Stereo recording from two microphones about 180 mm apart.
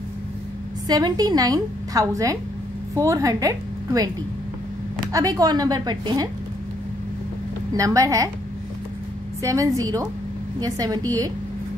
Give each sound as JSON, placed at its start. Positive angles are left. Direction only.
{"t": 0.8, "sound": "a woman's voice", "side_deg": -20}
{"t": 5.1, "sound": "a woman's voice", "side_deg": -20}
{"t": 7.7, "sound": "a woman's voice", "side_deg": -20}
{"t": 9.4, "sound": "a woman's voice", "side_deg": -20}